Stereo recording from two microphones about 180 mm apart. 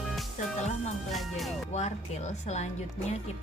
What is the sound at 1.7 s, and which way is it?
Music, 40° left (ahead or behind).